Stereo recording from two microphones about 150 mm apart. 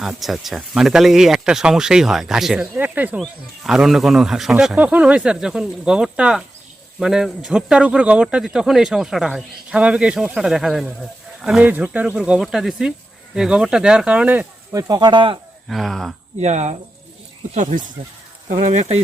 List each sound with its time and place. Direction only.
0.0 s speech: centre (ahead or behind)
14.8 s speech: 25° right (ahead or behind)
15.7 s speech: centre (ahead or behind)
16.4 s speech: 50° right (ahead or behind)